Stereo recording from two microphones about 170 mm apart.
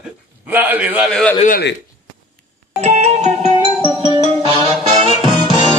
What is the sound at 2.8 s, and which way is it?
Music, 40° right (ahead or behind).